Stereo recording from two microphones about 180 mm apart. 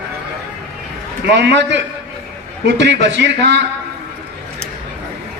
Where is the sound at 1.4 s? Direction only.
70° right (ahead or behind).